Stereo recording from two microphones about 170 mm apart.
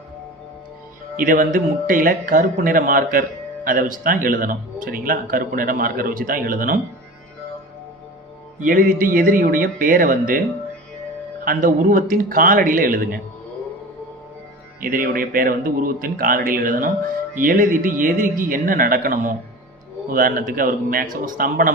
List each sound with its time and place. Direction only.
1.1 s speech: 55° right (ahead or behind)
8.5 s speech: 50° right (ahead or behind)
11.4 s speech: 50° right (ahead or behind)
14.8 s speech: 55° right (ahead or behind)